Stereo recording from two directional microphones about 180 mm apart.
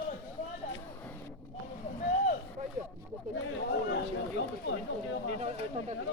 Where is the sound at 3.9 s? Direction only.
80° left.